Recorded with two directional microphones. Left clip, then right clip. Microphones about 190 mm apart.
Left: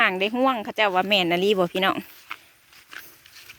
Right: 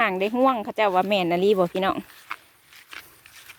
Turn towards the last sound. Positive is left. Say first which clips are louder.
# left 1 dB
turn(degrees=-5)  # may be behind; listen again after turning